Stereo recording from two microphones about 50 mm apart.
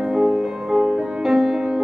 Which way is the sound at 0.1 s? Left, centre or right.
Centre.